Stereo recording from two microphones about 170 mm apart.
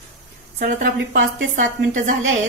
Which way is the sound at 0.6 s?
70° right (ahead or behind).